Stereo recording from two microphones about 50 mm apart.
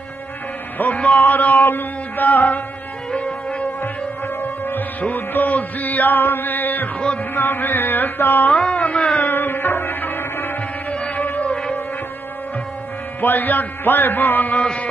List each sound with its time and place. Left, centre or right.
0.7 s a man's voice: left
3.1 s music: left
4.6 s music: left
7.3 s mantra: left
8.5 s carnatic music: left
9.2 s music: left
11.1 s music: left
13.2 s a man's voice: left